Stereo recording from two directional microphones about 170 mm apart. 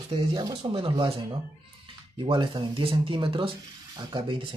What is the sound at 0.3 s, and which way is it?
Speech, 25° right (ahead or behind).